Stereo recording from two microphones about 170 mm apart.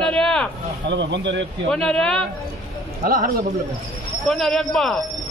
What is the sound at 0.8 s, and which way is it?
Speech, 90° right.